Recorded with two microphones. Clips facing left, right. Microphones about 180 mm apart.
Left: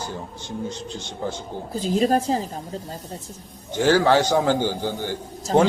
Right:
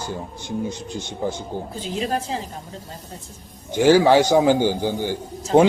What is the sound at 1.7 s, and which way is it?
Speech, 40° left (ahead or behind).